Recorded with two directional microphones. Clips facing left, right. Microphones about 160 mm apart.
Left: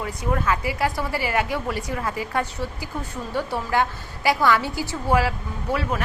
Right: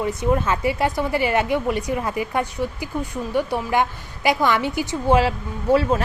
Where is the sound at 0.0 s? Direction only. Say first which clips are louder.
Right 4 dB; 25° right (ahead or behind).